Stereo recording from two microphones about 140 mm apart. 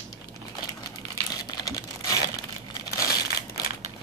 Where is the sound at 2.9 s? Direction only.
90° left.